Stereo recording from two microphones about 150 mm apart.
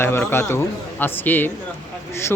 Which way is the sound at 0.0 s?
15° left (ahead or behind).